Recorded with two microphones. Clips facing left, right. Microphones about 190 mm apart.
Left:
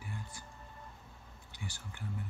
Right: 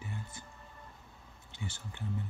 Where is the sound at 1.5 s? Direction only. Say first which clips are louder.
Right 3 dB; 20° right (ahead or behind).